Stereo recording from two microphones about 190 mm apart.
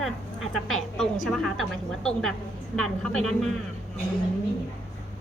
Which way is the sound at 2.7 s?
5° left (ahead or behind).